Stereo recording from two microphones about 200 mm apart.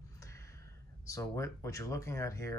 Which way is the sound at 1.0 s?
15° left (ahead or behind).